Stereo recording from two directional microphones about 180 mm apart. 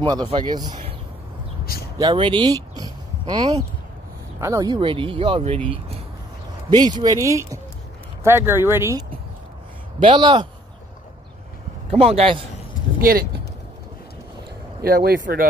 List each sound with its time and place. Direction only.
0.0 s speech: 25° right (ahead or behind)
2.0 s speech: 25° right (ahead or behind)
6.7 s speech: 20° right (ahead or behind)
9.9 s speech: 25° right (ahead or behind)
11.9 s a man's voice: 35° right (ahead or behind)
13.0 s speech: 55° right (ahead or behind)
14.8 s speech: 60° right (ahead or behind)